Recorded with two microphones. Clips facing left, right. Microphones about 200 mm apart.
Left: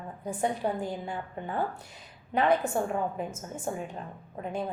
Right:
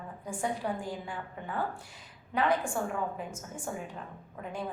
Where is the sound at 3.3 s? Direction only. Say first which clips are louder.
Left 4 dB; 20° left (ahead or behind).